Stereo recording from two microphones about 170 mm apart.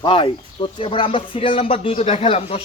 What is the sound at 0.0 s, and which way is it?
Speech, 30° left (ahead or behind).